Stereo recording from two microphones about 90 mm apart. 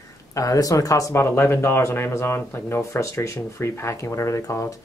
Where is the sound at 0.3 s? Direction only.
40° left (ahead or behind).